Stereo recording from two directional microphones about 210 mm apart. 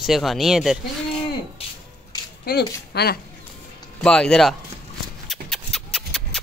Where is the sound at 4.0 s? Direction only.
5° left (ahead or behind).